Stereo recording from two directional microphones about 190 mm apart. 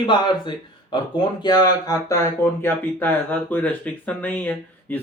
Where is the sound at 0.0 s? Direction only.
25° left (ahead or behind).